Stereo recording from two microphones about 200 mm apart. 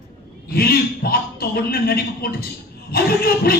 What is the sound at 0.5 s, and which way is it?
A man's voice, 50° left (ahead or behind).